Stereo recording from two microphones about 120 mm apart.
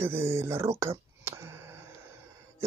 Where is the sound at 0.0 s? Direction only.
20° right (ahead or behind).